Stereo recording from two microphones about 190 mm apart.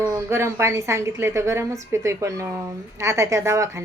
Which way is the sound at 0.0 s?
15° right (ahead or behind).